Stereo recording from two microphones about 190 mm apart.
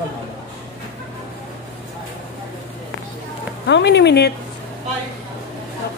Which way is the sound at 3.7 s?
65° left (ahead or behind).